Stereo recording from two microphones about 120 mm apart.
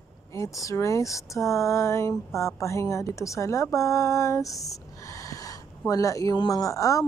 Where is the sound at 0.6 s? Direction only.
25° left (ahead or behind).